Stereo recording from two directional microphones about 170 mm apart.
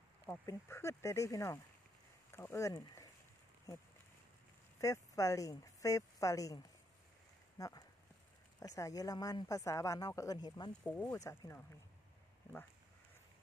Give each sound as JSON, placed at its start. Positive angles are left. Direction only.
{"t": 0.3, "sound": "speech", "side_deg": 15}
{"t": 4.7, "sound": "a woman's voice", "side_deg": 20}